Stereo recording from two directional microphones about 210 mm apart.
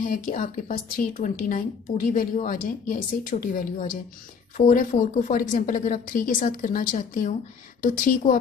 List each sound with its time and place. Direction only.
0.0 s speech: 40° left (ahead or behind)